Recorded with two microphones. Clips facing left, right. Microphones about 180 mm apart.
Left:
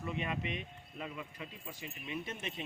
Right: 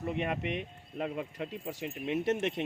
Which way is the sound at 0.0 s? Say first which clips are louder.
Right 5 dB; 55° right (ahead or behind).